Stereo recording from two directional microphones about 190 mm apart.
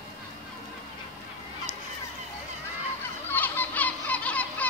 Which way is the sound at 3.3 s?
10° left (ahead or behind).